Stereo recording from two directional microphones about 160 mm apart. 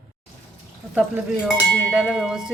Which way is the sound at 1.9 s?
Centre (ahead or behind).